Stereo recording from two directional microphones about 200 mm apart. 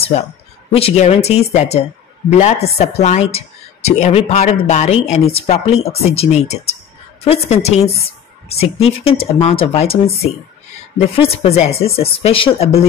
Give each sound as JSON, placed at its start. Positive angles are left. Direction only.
{"t": 0.7, "sound": "a woman's voice", "side_deg": 30}